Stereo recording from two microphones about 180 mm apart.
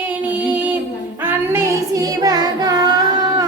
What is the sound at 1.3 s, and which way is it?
Child singing, 15° right (ahead or behind).